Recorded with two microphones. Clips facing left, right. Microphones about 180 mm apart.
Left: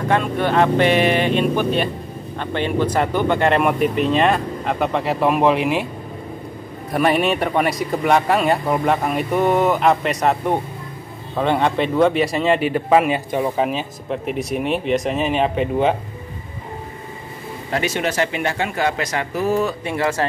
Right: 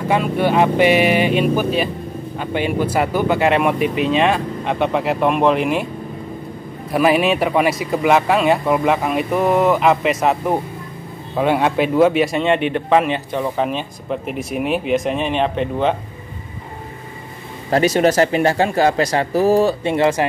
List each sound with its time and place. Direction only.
0.1 s speech: 10° right (ahead or behind)
6.9 s speech: centre (ahead or behind)
17.6 s speech: 40° right (ahead or behind); by 20.2 s 20° right (ahead or behind)